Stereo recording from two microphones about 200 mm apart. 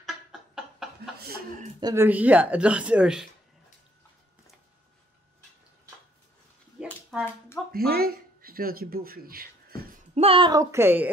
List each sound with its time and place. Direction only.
0.0 s a sound: centre (ahead or behind)
1.8 s speech: 20° right (ahead or behind)
2.0 s speech: 10° right (ahead or behind)
6.8 s a sound: 5° right (ahead or behind)
7.7 s speech: 50° right (ahead or behind)
10.1 s speech: 30° right (ahead or behind); by 11.1 s 10° right (ahead or behind)